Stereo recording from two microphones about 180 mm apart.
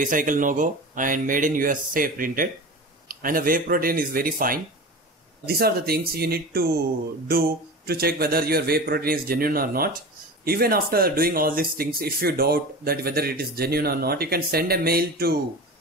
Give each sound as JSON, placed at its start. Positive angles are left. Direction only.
{"t": 0.0, "sound": "speech", "side_deg": -45}